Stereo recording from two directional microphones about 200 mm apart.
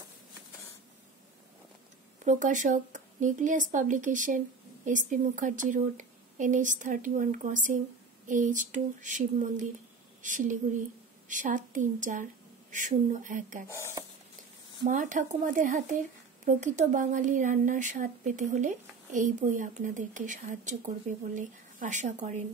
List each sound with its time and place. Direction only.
2.2 s speech: 40° right (ahead or behind)
13.7 s speech: 15° left (ahead or behind)
14.9 s speech: 40° right (ahead or behind)